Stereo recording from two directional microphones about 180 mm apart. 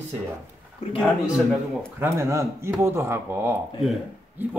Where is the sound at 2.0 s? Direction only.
15° right (ahead or behind).